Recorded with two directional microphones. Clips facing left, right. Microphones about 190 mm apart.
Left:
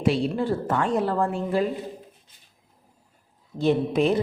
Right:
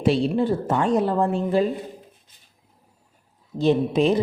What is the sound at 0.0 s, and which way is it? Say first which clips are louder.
A man's voice: right 3 dB; 25° right (ahead or behind).